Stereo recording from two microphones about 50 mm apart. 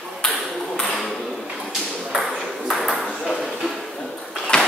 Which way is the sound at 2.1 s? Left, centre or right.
Centre.